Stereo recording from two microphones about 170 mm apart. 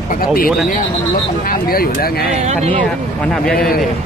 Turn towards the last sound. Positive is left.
turn(degrees=5)  # may be behind; listen again after turning